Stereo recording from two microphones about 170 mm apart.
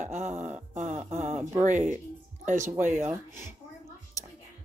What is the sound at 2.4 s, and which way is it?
Speech, 45° right (ahead or behind).